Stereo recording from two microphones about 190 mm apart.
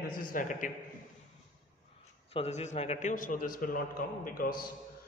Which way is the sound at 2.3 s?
35° left (ahead or behind).